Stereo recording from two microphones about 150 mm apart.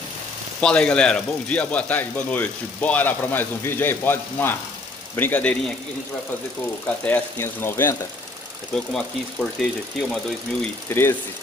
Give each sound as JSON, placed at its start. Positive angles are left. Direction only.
{"t": 0.6, "sound": "speech", "side_deg": 5}
{"t": 7.1, "sound": "speech", "side_deg": 15}
{"t": 8.7, "sound": "speech", "side_deg": 0}
{"t": 10.9, "sound": "speech", "side_deg": 15}